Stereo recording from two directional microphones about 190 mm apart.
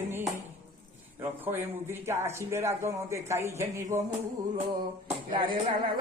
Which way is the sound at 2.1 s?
15° right (ahead or behind).